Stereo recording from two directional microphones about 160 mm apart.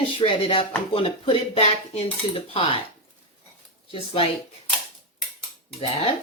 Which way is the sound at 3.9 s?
35° left (ahead or behind).